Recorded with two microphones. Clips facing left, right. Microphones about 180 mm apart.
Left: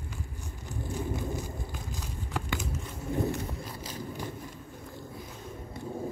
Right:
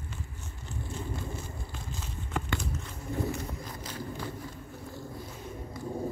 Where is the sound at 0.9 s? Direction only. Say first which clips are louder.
Left 5 dB; 15° left (ahead or behind).